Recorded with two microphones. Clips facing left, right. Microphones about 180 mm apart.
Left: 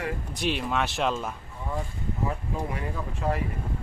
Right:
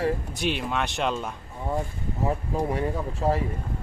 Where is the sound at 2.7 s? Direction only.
35° right (ahead or behind).